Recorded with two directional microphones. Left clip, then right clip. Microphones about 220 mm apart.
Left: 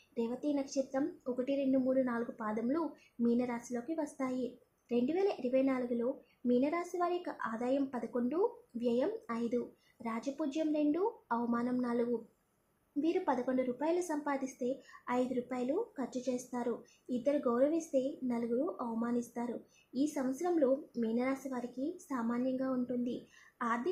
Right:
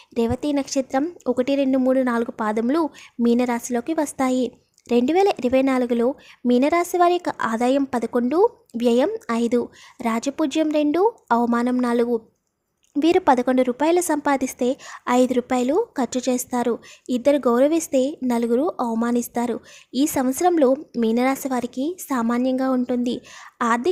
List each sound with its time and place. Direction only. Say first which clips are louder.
0.1 s a woman's voice: right 14 dB; 45° right (ahead or behind)